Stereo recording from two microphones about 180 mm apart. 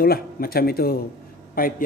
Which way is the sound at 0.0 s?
55° left (ahead or behind).